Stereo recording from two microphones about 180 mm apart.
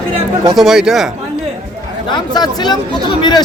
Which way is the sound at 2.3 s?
25° left (ahead or behind).